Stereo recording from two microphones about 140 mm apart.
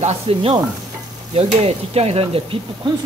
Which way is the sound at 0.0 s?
45° right (ahead or behind).